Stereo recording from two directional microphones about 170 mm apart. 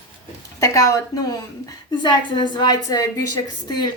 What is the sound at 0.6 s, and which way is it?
A woman's voice, 20° left (ahead or behind).